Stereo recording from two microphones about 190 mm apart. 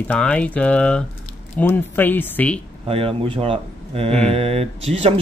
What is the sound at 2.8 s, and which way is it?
Speech, 30° right (ahead or behind).